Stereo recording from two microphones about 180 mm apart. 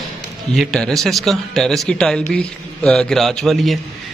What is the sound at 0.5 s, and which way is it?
Speech, centre (ahead or behind).